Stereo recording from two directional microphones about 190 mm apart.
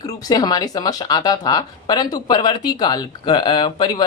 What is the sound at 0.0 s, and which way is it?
Speech, 20° left (ahead or behind).